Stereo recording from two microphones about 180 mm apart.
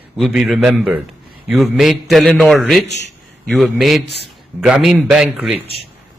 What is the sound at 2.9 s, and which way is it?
Speech, 75° left (ahead or behind).